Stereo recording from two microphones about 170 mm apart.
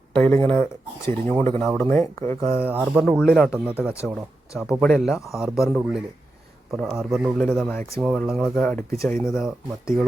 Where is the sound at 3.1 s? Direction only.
10° left (ahead or behind).